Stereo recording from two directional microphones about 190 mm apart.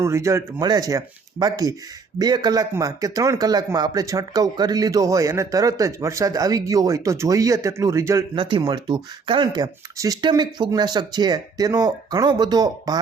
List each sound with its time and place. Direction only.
0.0 s a man's voice: 15° right (ahead or behind)